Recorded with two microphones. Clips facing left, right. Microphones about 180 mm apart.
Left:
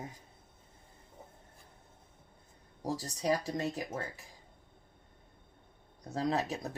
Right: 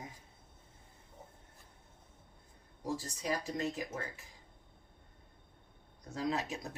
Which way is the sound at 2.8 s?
35° left (ahead or behind).